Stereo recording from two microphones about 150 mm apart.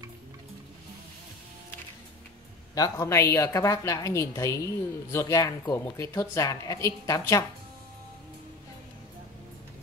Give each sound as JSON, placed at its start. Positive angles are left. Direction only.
{"t": 2.7, "sound": "a woman's voice", "side_deg": 25}